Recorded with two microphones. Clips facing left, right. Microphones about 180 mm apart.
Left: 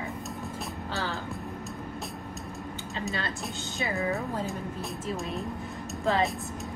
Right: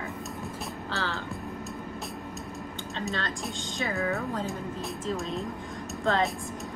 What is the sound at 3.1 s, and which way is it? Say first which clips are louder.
A woman's voice: right 1 dB; 10° left (ahead or behind).